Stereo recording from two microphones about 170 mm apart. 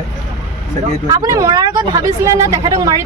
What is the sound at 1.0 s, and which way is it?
Speech, 20° right (ahead or behind).